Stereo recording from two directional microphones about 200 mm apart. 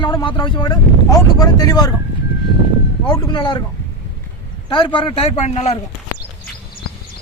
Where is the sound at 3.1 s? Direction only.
20° left (ahead or behind).